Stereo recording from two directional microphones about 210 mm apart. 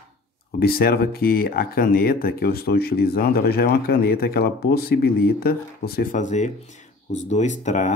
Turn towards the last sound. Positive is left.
turn(degrees=35)  # may be behind; listen again after turning